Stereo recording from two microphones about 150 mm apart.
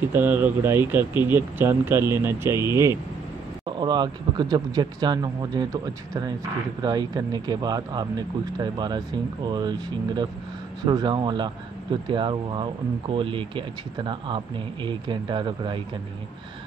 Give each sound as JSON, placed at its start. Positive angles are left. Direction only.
{"t": 0.1, "sound": "speech", "side_deg": -15}